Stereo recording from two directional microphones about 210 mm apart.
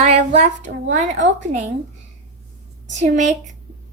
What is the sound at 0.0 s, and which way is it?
Child singing, 30° right (ahead or behind).